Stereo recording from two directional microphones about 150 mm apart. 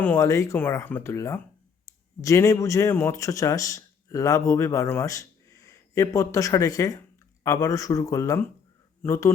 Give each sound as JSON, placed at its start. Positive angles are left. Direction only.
{"t": 0.0, "sound": "speech", "side_deg": 15}